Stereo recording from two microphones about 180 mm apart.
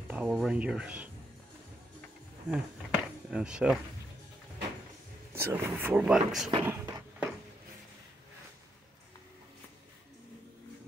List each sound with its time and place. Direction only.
0.1 s speech: 5° right (ahead or behind)
2.5 s speech: 5° right (ahead or behind)
5.4 s speech: 10° right (ahead or behind)
6.6 s a sound: 10° right (ahead or behind)